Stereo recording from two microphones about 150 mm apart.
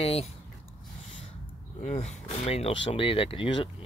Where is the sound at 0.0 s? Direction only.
40° left (ahead or behind).